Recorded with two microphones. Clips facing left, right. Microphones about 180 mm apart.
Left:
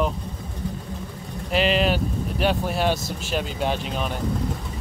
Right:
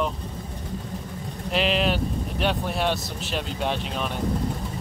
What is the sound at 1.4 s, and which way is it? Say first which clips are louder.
Speech: left 2 dB; centre (ahead or behind).